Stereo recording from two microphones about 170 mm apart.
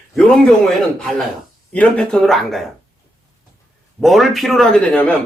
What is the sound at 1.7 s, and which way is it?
Speech, 5° left (ahead or behind).